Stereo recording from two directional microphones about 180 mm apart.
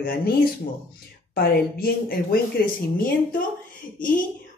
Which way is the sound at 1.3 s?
55° left (ahead or behind).